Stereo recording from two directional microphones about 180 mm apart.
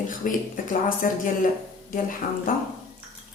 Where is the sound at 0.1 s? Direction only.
50° left (ahead or behind).